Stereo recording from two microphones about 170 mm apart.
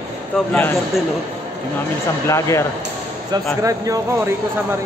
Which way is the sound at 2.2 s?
15° left (ahead or behind).